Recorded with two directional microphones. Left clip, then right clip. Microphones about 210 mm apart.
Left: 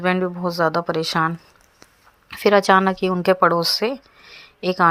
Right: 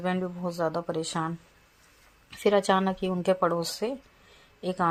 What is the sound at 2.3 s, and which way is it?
A woman's voice, 15° left (ahead or behind).